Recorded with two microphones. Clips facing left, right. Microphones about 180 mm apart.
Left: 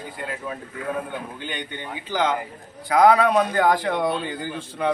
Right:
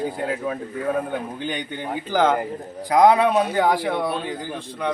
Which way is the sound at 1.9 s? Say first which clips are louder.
Right 4 dB; 50° right (ahead or behind).